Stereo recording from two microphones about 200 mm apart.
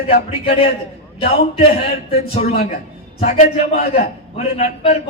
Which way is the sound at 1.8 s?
30° left (ahead or behind).